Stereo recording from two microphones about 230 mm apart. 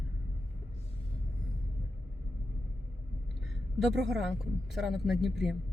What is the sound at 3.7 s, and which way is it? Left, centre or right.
A man's voice, centre.